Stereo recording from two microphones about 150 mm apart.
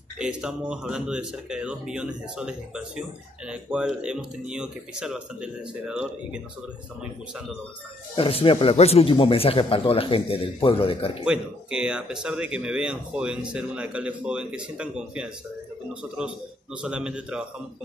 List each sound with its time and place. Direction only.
0.2 s speech: 5° right (ahead or behind)
8.2 s speech: 40° left (ahead or behind)
11.2 s speech: 5° right (ahead or behind)